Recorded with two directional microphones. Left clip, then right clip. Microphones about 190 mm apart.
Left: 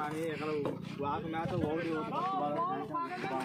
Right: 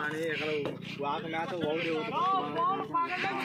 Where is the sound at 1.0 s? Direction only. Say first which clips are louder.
Right 3 dB; 55° left (ahead or behind).